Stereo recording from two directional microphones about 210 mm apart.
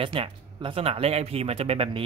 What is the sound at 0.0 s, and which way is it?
Speech, 25° right (ahead or behind).